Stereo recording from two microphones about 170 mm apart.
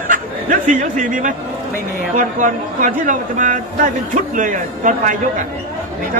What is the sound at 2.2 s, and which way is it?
Speech, 50° right (ahead or behind).